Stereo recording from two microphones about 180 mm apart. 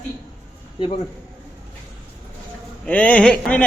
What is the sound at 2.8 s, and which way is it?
Speech, 5° left (ahead or behind).